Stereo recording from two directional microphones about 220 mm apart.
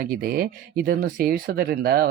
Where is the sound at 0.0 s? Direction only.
40° right (ahead or behind).